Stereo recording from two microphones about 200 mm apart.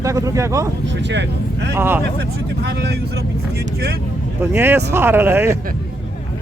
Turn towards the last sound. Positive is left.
turn(degrees=-15)  # may be behind; listen again after turning